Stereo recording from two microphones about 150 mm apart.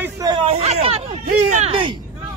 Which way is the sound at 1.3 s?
55° right (ahead or behind).